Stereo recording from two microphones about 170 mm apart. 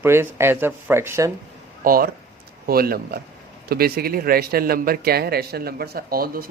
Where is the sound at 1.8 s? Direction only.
55° right (ahead or behind).